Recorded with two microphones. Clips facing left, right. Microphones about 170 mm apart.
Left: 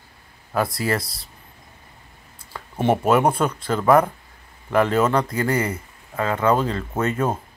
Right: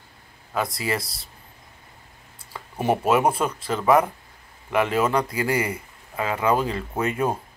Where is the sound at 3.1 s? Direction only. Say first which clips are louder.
Left 1 dB; 5° right (ahead or behind).